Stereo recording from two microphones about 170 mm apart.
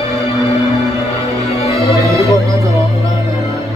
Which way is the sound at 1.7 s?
20° right (ahead or behind).